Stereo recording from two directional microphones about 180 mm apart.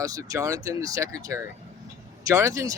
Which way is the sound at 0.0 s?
20° right (ahead or behind).